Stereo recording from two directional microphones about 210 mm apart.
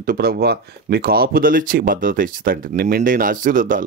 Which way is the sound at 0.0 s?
45° right (ahead or behind).